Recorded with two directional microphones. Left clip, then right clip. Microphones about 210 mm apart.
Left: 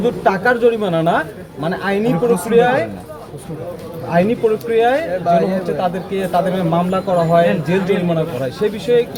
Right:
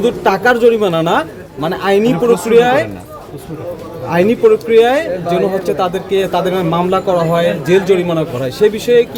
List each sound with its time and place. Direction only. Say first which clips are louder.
0.0 s speech: right 3 dB; 60° right (ahead or behind)
4.1 s speech: right 5 dB; 60° right (ahead or behind)